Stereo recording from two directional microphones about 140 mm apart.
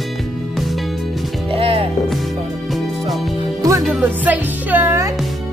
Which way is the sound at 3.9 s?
10° right (ahead or behind).